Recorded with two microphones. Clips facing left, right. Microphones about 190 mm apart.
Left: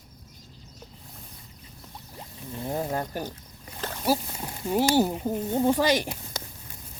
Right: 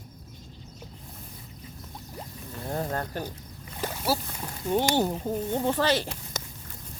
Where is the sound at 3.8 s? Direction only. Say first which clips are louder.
Right 2 dB; 10° right (ahead or behind).